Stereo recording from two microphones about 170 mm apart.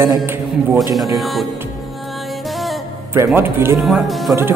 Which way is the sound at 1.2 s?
Centre (ahead or behind).